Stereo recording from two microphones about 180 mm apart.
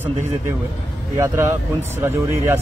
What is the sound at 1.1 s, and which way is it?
Speech, 15° right (ahead or behind).